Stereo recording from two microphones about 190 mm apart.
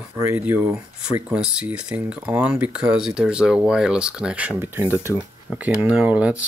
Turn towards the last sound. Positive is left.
turn(degrees=-5)  # may be behind; listen again after turning